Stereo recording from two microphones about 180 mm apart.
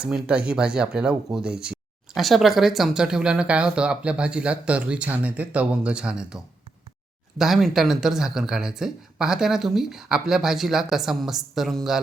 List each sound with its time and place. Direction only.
0.0 s speech: 5° right (ahead or behind)